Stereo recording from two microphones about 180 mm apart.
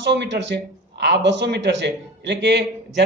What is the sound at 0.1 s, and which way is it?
A man's voice, 70° right (ahead or behind).